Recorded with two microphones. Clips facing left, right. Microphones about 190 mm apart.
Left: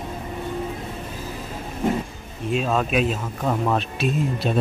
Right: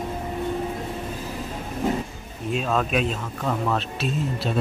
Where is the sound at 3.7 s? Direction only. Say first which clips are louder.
Left 3 dB; 15° left (ahead or behind).